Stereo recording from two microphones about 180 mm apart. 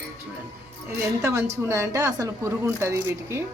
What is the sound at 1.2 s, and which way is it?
Speech, 15° right (ahead or behind).